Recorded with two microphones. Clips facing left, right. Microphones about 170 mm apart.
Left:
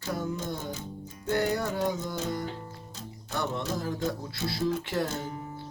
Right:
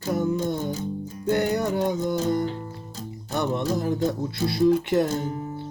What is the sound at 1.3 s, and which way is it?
Music, 20° right (ahead or behind).